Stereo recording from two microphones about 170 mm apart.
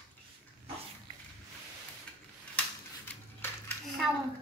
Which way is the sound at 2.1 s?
5° left (ahead or behind).